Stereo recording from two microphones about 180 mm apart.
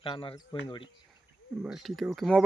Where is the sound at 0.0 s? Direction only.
30° left (ahead or behind).